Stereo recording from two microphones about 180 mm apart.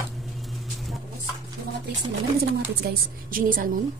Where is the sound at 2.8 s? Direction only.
55° right (ahead or behind).